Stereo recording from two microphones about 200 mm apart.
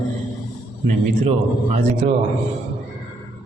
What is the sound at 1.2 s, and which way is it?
A man's voice, 35° right (ahead or behind).